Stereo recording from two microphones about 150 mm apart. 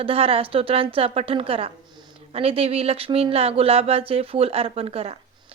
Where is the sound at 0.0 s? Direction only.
40° right (ahead or behind).